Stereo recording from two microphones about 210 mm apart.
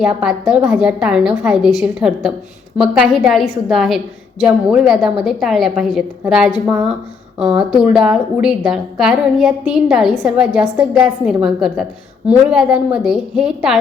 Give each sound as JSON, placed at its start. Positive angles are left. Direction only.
{"t": 0.0, "sound": "a woman's voice", "side_deg": -5}